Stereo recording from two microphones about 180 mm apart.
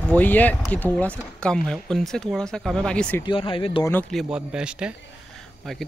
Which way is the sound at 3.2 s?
30° left (ahead or behind).